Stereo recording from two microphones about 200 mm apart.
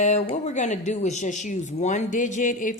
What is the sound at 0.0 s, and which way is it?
A woman's voice, 35° left (ahead or behind).